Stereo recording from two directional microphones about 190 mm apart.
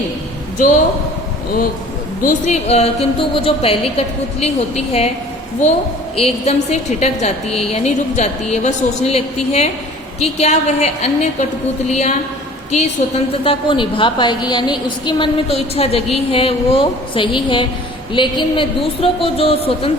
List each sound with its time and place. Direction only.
2.2 s a woman's voice: 40° left (ahead or behind)
6.1 s a woman's voice: 35° left (ahead or behind)